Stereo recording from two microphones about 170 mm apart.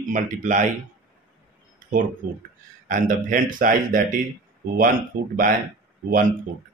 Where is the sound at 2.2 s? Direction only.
60° right (ahead or behind).